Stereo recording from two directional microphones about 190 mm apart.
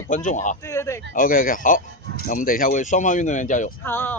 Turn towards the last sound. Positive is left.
turn(degrees=10)  # may be behind; listen again after turning